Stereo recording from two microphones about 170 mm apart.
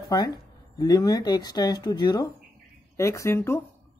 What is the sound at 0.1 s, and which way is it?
Speech, 25° left (ahead or behind).